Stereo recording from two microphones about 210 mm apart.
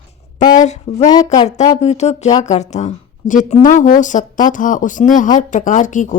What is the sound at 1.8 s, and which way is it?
A woman's voice, 30° left (ahead or behind).